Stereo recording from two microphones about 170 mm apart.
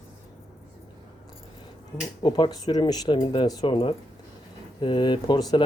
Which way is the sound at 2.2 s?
25° left (ahead or behind).